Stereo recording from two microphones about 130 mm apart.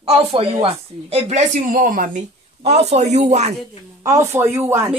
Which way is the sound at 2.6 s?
55° right (ahead or behind).